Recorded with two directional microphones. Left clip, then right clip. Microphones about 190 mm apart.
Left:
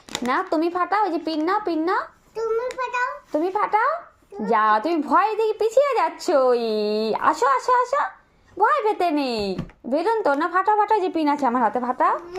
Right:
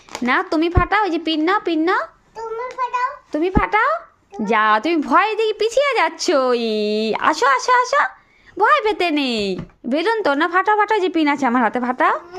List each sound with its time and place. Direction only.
0.3 s a woman's voice: 35° right (ahead or behind)
2.7 s a child's voice: 20° right (ahead or behind)
3.3 s a woman's voice: 40° right (ahead or behind)